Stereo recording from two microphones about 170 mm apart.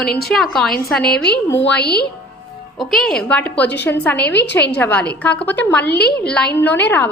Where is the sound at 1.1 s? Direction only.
70° left (ahead or behind).